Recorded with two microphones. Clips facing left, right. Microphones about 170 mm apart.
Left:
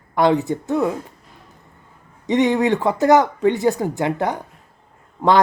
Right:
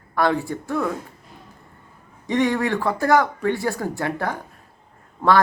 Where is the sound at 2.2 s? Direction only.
20° left (ahead or behind).